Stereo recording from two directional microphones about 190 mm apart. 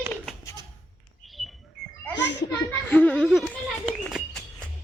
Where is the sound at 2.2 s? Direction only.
65° left (ahead or behind).